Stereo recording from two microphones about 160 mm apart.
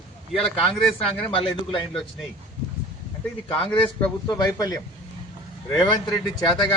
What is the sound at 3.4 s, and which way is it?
A man's voice, 35° left (ahead or behind).